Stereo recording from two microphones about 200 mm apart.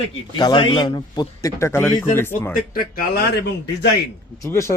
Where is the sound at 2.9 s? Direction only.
55° left (ahead or behind).